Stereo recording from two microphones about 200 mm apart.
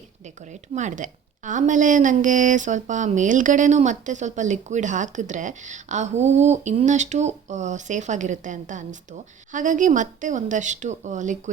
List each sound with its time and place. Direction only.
0.7 s a woman's voice: 35° right (ahead or behind)